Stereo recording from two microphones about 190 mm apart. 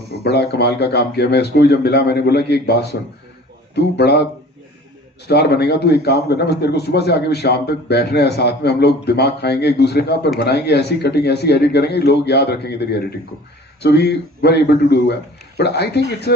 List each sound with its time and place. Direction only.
0.3 s a man's voice: 60° left (ahead or behind)
5.3 s a man's voice: 60° left (ahead or behind)